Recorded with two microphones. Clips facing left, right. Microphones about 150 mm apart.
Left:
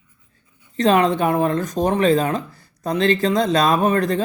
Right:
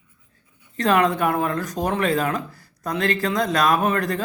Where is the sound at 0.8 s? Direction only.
25° left (ahead or behind).